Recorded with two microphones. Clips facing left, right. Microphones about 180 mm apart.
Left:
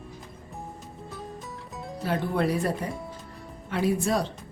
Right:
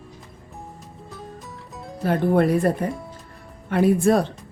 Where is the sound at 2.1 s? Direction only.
50° right (ahead or behind).